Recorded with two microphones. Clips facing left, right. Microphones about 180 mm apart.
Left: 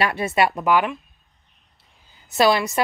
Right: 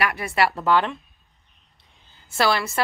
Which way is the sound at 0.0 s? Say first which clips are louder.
Left 2 dB; 25° left (ahead or behind).